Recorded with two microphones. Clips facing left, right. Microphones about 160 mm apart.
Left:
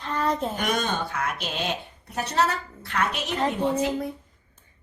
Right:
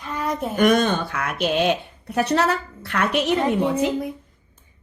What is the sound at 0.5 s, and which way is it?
A woman's voice, 55° right (ahead or behind).